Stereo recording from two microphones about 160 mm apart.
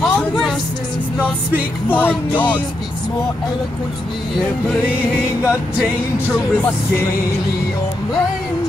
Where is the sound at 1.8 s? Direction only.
10° left (ahead or behind).